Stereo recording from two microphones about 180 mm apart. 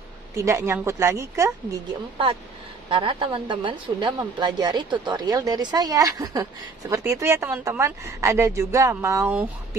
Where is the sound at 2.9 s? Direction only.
30° right (ahead or behind).